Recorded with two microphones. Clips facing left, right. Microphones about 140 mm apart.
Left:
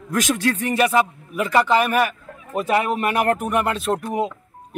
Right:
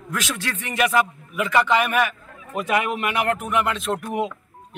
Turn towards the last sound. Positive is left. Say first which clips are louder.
# left 2 dB
turn(degrees=35)  # may be behind; listen again after turning